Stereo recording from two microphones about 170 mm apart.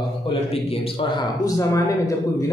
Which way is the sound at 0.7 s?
30° left (ahead or behind).